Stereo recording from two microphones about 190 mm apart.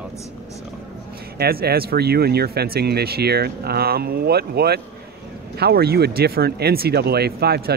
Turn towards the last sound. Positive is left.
turn(degrees=-55)  # may be behind; listen again after turning